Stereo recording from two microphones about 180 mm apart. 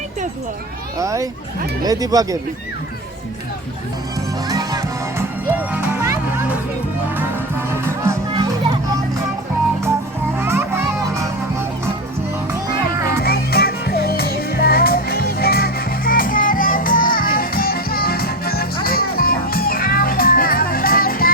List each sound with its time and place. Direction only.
0.9 s speech: 15° right (ahead or behind)
4.4 s music: 20° right (ahead or behind)
8.3 s music: 25° right (ahead or behind)
10.4 s music: 15° right (ahead or behind)
13.2 s music: 60° left (ahead or behind)